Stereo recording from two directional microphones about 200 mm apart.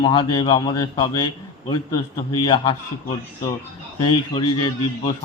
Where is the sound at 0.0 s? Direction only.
25° left (ahead or behind).